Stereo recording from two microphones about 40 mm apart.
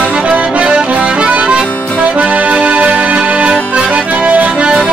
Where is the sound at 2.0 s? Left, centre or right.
Right.